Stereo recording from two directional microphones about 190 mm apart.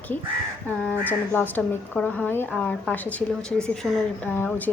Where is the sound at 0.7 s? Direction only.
10° left (ahead or behind).